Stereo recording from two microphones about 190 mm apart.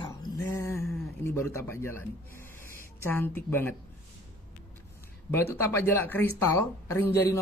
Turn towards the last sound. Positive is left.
turn(degrees=15)  # may be behind; listen again after turning